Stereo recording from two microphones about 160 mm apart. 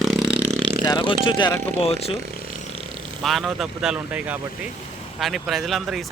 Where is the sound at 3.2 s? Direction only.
Centre (ahead or behind).